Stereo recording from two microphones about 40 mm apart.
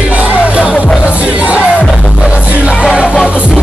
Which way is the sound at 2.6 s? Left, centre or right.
Right.